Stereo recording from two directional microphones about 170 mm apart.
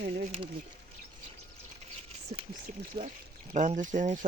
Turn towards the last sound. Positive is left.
turn(degrees=-45)  # may be behind; listen again after turning